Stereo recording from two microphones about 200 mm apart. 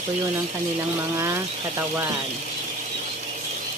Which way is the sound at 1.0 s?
15° right (ahead or behind).